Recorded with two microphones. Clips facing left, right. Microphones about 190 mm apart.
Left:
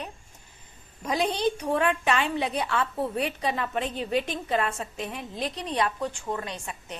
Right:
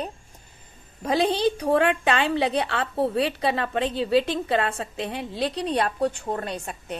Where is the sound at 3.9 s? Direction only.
30° right (ahead or behind).